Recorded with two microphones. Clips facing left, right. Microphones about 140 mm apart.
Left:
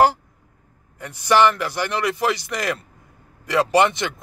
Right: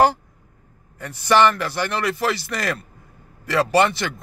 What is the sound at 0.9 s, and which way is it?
A man's voice, 15° left (ahead or behind).